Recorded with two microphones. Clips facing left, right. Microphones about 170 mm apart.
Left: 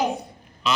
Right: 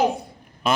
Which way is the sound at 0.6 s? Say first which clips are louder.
Right 3 dB; 50° right (ahead or behind).